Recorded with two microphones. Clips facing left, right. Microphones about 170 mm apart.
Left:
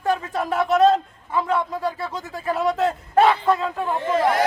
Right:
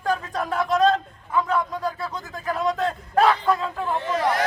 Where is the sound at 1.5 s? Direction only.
30° left (ahead or behind).